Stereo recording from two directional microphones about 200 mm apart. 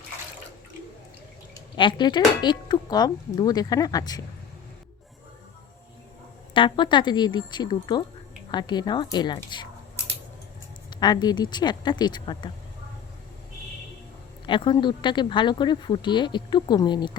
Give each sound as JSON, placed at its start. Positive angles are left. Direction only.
{"t": 1.5, "sound": "speech", "side_deg": 25}
{"t": 6.5, "sound": "speech", "side_deg": 25}
{"t": 11.0, "sound": "speech", "side_deg": 20}
{"t": 14.4, "sound": "speech", "side_deg": 25}